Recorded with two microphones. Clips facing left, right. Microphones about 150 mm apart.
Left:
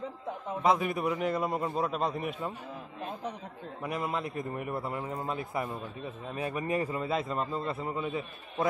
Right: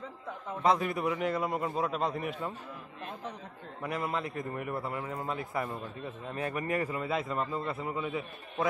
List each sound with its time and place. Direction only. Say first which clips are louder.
0.6 s a man's voice: even; 15° left (ahead or behind)
3.8 s a man's voice: even; 15° left (ahead or behind)
6.7 s a man's voice: left 2 dB; 25° left (ahead or behind)